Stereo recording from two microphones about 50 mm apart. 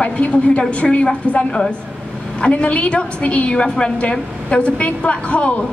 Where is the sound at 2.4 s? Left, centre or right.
Left.